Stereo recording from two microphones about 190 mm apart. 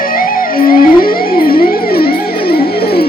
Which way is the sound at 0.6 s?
50° left (ahead or behind).